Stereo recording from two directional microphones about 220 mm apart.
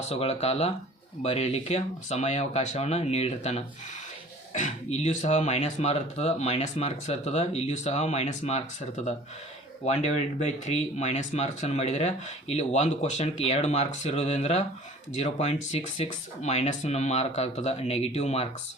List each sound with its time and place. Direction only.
0.1 s speech: 30° left (ahead or behind)
9.8 s speech: 30° left (ahead or behind)